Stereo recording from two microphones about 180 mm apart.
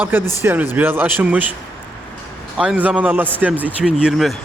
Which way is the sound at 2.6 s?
10° right (ahead or behind).